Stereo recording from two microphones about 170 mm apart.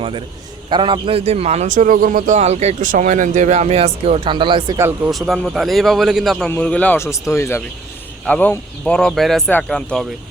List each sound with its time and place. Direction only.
0.7 s a man's voice: 30° right (ahead or behind)
4.8 s speech: 10° right (ahead or behind)
5.1 s speech: centre (ahead or behind)